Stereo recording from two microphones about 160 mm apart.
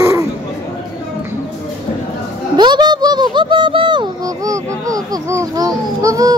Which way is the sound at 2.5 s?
25° right (ahead or behind).